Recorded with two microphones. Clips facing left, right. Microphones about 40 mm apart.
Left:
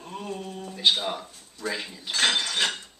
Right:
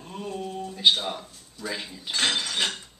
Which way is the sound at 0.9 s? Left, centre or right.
Centre.